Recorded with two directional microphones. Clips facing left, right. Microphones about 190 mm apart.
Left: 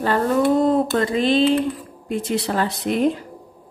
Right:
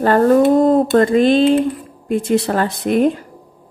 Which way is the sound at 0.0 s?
50° right (ahead or behind).